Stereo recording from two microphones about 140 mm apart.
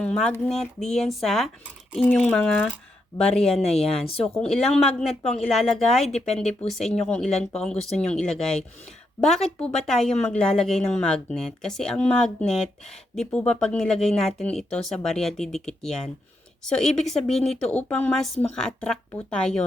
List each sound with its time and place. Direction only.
0.0 s a woman's voice: 5° left (ahead or behind)
6.1 s speech: 50° left (ahead or behind)
6.7 s a woman's voice: centre (ahead or behind)